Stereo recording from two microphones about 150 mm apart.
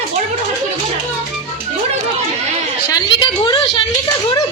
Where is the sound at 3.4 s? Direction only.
30° left (ahead or behind).